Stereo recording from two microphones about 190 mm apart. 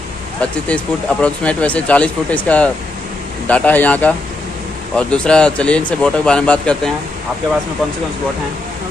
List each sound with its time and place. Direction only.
0.4 s speech: 5° left (ahead or behind)